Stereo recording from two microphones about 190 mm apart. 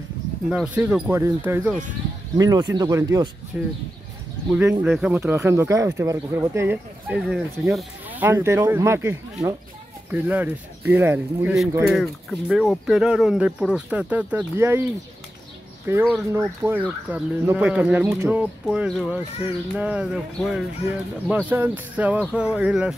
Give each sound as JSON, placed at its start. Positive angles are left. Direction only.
{"t": 0.5, "sound": "speech", "side_deg": -5}
{"t": 3.5, "sound": "speech", "side_deg": -10}
{"t": 11.8, "sound": "speech", "side_deg": 0}
{"t": 15.9, "sound": "speech", "side_deg": -15}